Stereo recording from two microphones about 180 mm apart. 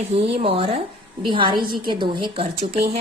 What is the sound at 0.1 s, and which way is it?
A woman's voice, 35° right (ahead or behind).